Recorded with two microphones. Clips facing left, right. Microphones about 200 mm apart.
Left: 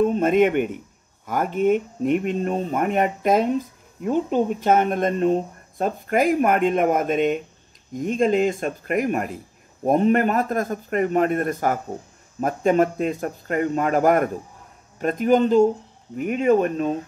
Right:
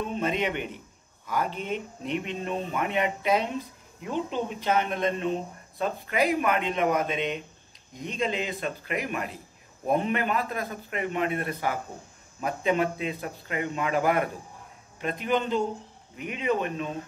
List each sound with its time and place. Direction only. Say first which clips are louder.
0.0 s speech: left 11 dB; 50° left (ahead or behind)